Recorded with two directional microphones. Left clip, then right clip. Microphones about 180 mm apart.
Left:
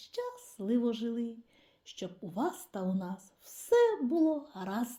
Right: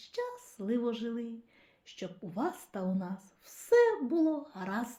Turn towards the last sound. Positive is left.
turn(degrees=35)  # may be behind; listen again after turning